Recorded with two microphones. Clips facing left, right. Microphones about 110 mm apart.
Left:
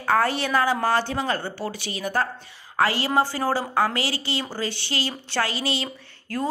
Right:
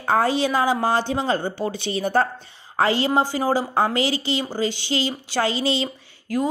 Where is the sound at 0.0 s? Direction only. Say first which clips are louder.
Right 2 dB; 20° right (ahead or behind).